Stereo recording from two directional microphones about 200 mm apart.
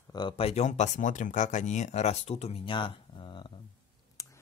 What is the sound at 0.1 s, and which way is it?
Speech, 25° left (ahead or behind).